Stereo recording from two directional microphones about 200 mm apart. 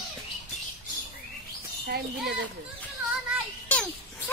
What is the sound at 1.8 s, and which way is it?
Speech, 55° right (ahead or behind).